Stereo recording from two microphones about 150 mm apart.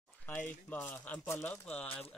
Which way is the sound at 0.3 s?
10° left (ahead or behind).